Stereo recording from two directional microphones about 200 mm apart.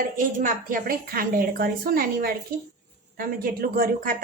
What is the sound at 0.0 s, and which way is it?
A woman's voice, 45° right (ahead or behind).